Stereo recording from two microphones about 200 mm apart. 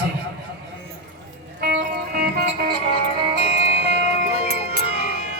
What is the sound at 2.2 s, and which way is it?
Music, 50° right (ahead or behind).